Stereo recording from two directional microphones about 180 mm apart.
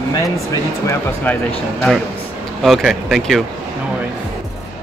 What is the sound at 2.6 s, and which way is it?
Speech, centre (ahead or behind).